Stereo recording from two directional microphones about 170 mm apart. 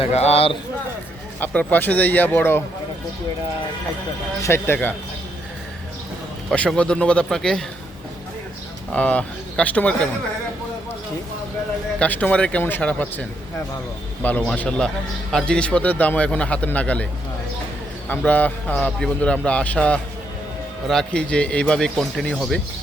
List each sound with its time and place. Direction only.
0.0 s speech: 40° left (ahead or behind)
1.4 s a man's voice: 10° left (ahead or behind)
4.4 s a man's voice: 15° left (ahead or behind)
6.5 s speech: 5° left (ahead or behind)
8.9 s a man's voice: 5° left (ahead or behind)
11.9 s a man's voice: 10° left (ahead or behind)
18.1 s a man's voice: 10° left (ahead or behind)